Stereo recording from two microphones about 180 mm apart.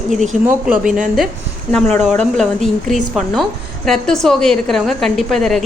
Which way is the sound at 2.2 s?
Centre (ahead or behind).